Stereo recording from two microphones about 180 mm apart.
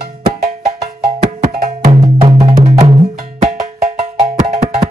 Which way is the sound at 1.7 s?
30° right (ahead or behind).